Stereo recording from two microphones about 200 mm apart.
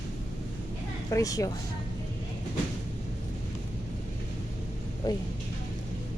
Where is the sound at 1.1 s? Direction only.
15° left (ahead or behind).